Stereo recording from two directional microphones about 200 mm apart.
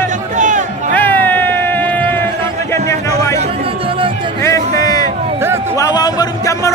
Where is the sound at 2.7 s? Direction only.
15° left (ahead or behind).